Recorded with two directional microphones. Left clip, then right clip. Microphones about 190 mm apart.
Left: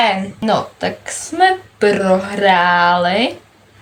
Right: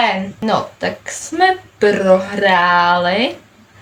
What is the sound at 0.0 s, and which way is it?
Speech, 15° left (ahead or behind).